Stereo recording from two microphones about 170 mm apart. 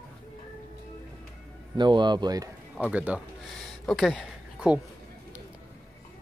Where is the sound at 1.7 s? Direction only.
25° right (ahead or behind).